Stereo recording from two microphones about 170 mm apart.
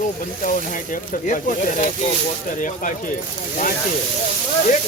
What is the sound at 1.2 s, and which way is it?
Speech, 50° left (ahead or behind).